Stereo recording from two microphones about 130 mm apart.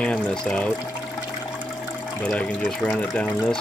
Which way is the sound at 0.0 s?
5° left (ahead or behind).